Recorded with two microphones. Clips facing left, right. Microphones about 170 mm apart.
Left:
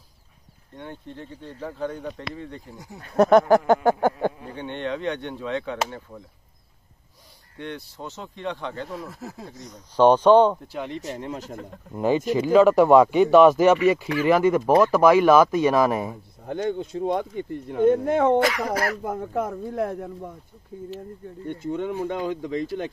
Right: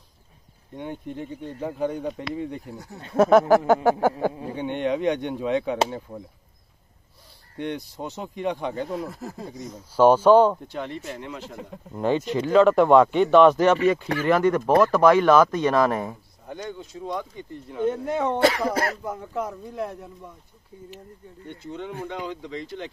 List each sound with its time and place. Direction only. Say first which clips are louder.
0.7 s speech: right 5 dB; 15° right (ahead or behind)
3.2 s speech: even; centre (ahead or behind)
4.3 s speech: right 6 dB; 25° right (ahead or behind)
4.6 s speech: right 4 dB; 15° right (ahead or behind)
7.5 s speech: right 5 dB; 15° right (ahead or behind)
8.9 s speech: right 4 dB; centre (ahead or behind)
11.0 s speech: left 3 dB; 40° left (ahead or behind)
11.9 s speech: left 2 dB; 5° left (ahead or behind)
16.4 s speech: left 8 dB; 55° left (ahead or behind)
18.4 s speech: right 2 dB; 30° right (ahead or behind)
19.0 s speech: left 3 dB; 50° left (ahead or behind)
21.5 s speech: left 7 dB; 50° left (ahead or behind)